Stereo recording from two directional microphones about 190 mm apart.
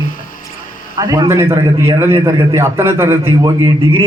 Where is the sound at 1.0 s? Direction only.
20° right (ahead or behind).